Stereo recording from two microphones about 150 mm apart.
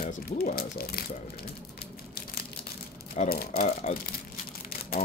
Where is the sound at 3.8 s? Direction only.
40° left (ahead or behind).